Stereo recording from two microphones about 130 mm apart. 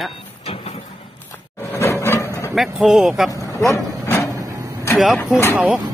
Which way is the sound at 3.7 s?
20° left (ahead or behind).